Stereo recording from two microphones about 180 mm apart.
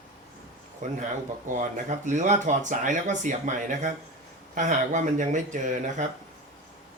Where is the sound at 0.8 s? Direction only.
45° right (ahead or behind).